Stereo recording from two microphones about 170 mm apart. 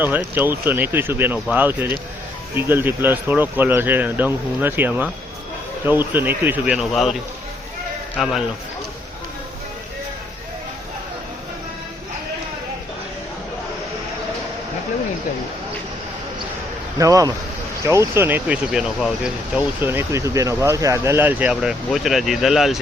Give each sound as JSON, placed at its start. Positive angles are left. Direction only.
{"t": 0.0, "sound": "a man's voice", "side_deg": -10}
{"t": 17.0, "sound": "speech", "side_deg": -20}